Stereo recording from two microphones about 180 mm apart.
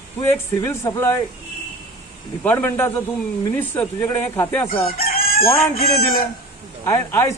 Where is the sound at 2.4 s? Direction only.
10° left (ahead or behind).